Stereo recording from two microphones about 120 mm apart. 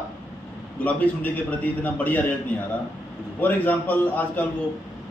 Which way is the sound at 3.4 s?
15° left (ahead or behind).